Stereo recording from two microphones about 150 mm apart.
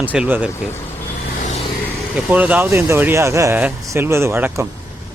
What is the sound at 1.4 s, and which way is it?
Vehicle, 50° left (ahead or behind).